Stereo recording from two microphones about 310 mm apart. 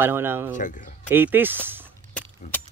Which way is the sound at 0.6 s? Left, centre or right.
Left.